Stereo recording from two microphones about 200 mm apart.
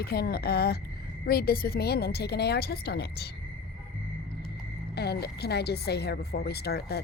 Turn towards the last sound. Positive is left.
turn(degrees=55)  # may be behind; listen again after turning